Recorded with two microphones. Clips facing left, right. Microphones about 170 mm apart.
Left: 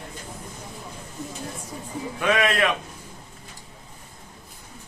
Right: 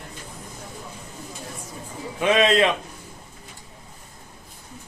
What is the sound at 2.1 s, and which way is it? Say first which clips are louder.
Speech: right 4 dB; 20° right (ahead or behind).